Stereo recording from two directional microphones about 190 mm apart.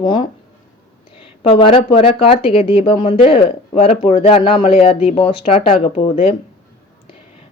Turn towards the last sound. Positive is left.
turn(degrees=30)  # may be behind; listen again after turning